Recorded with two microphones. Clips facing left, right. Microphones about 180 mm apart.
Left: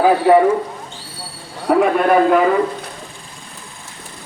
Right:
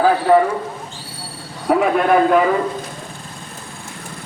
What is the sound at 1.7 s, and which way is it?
Speech, centre (ahead or behind).